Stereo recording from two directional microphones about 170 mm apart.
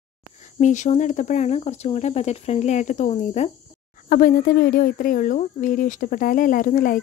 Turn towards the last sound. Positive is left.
turn(degrees=55)  # may be behind; listen again after turning